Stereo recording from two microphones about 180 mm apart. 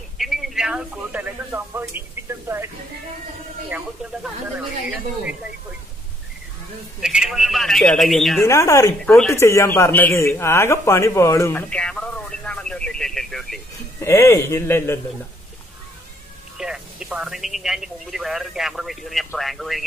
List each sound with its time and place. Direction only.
0.2 s speech: centre (ahead or behind)
7.0 s speech: 5° right (ahead or behind)
8.4 s a man's voice: 15° left (ahead or behind)
9.0 s speech: 5° left (ahead or behind)
9.3 s a man's voice: 15° left (ahead or behind)
13.9 s a man's voice: 15° left (ahead or behind)
16.5 s speech: 5° right (ahead or behind)